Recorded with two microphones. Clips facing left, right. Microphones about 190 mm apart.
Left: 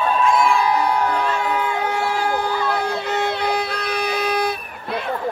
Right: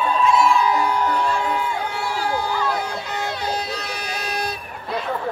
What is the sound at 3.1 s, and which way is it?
Music, 60° left (ahead or behind).